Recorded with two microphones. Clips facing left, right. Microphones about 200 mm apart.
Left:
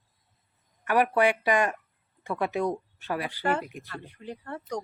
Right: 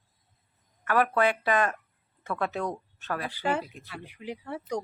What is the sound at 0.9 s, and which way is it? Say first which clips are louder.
Speech: left 2 dB; 15° left (ahead or behind).